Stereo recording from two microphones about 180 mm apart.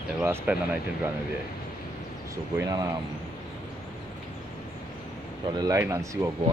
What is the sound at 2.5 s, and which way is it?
Speech, 20° right (ahead or behind).